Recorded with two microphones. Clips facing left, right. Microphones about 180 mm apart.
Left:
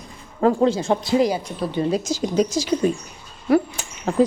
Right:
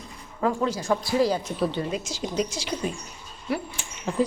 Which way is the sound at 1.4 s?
5° right (ahead or behind).